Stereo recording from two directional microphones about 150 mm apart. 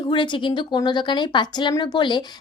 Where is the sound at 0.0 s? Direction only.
30° left (ahead or behind).